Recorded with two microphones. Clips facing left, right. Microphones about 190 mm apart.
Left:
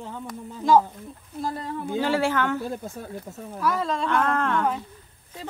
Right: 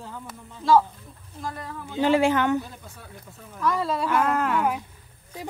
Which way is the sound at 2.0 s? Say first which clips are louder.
Right 4 dB; 15° right (ahead or behind).